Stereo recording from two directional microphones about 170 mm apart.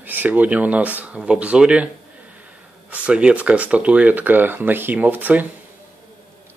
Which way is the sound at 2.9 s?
5° right (ahead or behind).